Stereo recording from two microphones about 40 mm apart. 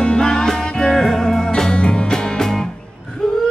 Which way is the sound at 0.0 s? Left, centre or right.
Left.